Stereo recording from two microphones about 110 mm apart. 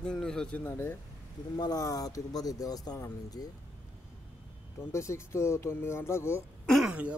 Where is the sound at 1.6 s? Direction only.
35° left (ahead or behind).